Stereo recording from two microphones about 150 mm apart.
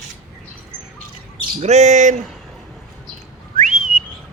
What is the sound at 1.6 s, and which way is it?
Speech, 50° right (ahead or behind).